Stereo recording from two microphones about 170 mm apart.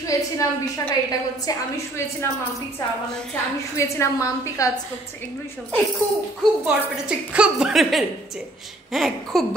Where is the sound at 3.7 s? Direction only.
15° left (ahead or behind).